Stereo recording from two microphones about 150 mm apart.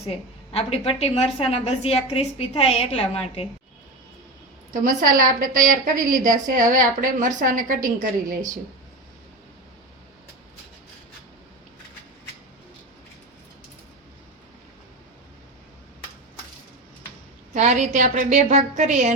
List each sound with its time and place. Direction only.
0.0 s a woman's voice: 40° left (ahead or behind)
4.7 s a woman's voice: 60° right (ahead or behind)
17.5 s a woman's voice: 55° right (ahead or behind)